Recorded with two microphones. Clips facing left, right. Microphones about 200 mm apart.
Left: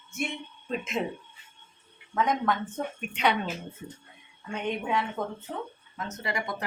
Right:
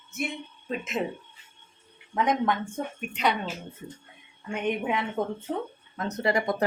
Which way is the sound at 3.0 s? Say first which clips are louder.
Even; centre (ahead or behind).